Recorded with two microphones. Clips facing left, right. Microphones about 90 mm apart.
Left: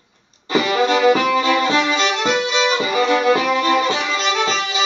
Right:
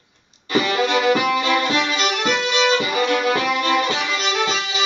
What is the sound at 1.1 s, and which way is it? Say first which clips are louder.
Violin: left 2 dB; 5° right (ahead or behind).